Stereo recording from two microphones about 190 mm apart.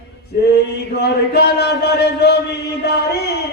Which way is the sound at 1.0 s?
60° left (ahead or behind).